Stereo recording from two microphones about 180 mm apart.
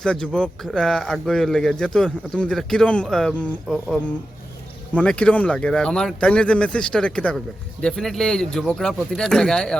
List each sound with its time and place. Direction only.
0.0 s speech: 5° left (ahead or behind)